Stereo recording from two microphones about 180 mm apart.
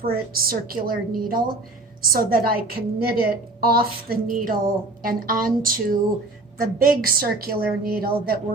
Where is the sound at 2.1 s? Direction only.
55° right (ahead or behind).